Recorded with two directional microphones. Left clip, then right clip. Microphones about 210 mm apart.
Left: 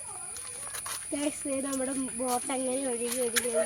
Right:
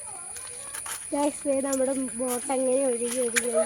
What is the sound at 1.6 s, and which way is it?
Speech, 15° right (ahead or behind).